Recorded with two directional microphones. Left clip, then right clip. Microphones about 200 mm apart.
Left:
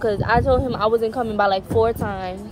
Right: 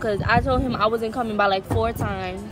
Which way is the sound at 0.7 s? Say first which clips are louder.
Left 2 dB; 25° left (ahead or behind).